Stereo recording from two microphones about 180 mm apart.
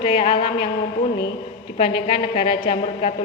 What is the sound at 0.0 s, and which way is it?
Speech, 30° left (ahead or behind).